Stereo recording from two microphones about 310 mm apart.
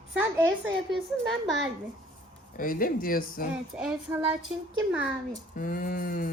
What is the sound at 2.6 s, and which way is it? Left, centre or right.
Speech, left.